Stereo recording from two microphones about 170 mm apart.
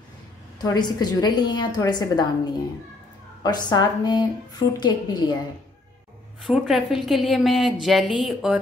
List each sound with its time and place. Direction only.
0.6 s a woman's voice: 25° left (ahead or behind)
3.4 s a woman's voice: 25° left (ahead or behind)
6.4 s speech: centre (ahead or behind)